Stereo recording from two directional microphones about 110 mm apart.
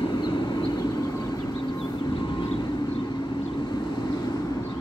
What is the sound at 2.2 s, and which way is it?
Vehicle, 45° left (ahead or behind).